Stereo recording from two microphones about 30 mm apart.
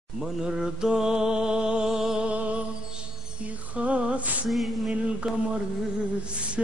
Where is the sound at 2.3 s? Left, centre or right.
Right.